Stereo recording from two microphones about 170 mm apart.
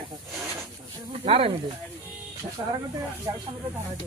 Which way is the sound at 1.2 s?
35° right (ahead or behind).